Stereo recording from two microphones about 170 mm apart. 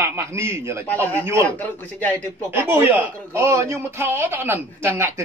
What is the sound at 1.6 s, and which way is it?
Speech, 10° left (ahead or behind).